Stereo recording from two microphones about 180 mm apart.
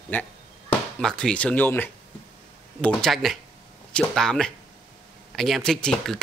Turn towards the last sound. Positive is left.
turn(degrees=5)  # may be behind; listen again after turning